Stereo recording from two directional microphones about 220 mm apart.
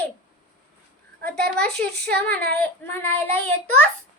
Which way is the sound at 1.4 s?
45° right (ahead or behind).